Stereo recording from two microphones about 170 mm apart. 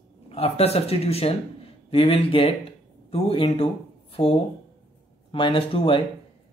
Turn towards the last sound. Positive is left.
turn(degrees=30)  # may be behind; listen again after turning